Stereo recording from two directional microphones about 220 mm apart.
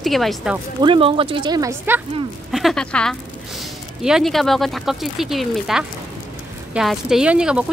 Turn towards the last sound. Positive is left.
turn(degrees=-5)  # may be behind; listen again after turning